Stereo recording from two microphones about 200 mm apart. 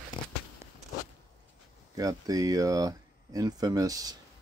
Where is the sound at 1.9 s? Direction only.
20° right (ahead or behind).